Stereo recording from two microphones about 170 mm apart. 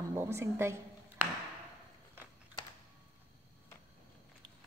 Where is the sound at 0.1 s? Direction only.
15° right (ahead or behind).